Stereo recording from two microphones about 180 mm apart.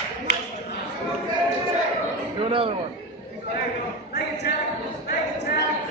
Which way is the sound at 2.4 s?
30° right (ahead or behind).